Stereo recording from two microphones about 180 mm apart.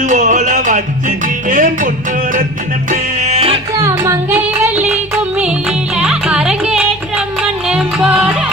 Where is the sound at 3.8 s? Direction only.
15° right (ahead or behind).